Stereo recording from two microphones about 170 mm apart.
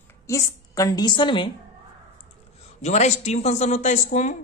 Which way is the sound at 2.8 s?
40° left (ahead or behind).